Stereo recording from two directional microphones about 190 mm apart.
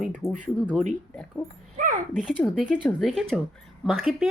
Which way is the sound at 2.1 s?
5° left (ahead or behind).